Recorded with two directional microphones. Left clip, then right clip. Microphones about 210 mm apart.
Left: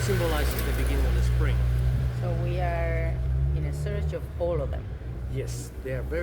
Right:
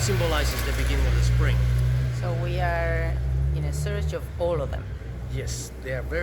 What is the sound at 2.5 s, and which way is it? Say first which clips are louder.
Speech: right 4 dB; 10° right (ahead or behind).